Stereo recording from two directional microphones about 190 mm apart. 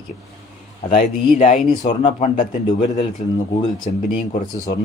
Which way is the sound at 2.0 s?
30° left (ahead or behind).